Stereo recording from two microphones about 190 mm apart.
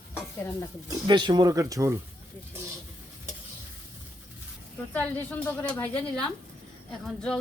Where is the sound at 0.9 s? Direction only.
25° right (ahead or behind).